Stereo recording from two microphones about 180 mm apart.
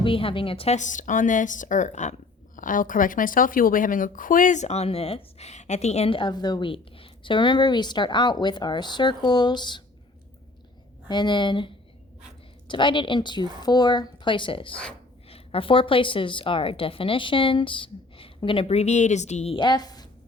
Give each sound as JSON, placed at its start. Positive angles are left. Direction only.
{"t": 0.0, "sound": "speech", "side_deg": 30}
{"t": 11.1, "sound": "a woman's voice", "side_deg": 25}
{"t": 19.5, "sound": "a woman's voice", "side_deg": 25}